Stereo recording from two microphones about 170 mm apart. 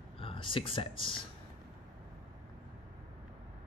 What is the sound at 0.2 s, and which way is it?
Speech, 30° left (ahead or behind).